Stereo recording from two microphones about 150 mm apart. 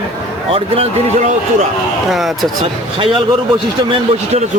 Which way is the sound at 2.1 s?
Centre (ahead or behind).